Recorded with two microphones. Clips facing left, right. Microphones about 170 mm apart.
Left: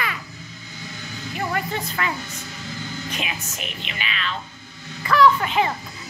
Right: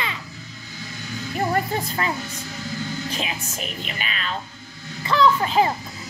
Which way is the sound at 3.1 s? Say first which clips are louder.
Right 2 dB; 35° right (ahead or behind).